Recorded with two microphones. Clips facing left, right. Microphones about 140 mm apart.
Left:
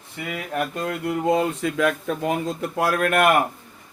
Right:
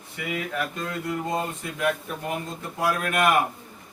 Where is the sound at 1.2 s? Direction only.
85° left; by 3.3 s 60° left (ahead or behind).